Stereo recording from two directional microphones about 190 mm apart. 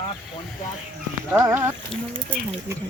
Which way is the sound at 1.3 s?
10° right (ahead or behind).